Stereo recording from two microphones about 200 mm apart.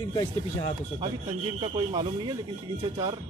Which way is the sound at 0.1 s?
20° left (ahead or behind).